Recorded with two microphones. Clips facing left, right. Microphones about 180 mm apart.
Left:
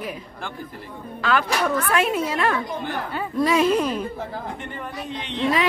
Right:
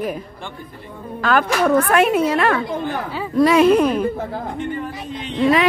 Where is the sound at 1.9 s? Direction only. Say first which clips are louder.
Right 6 dB; 60° right (ahead or behind).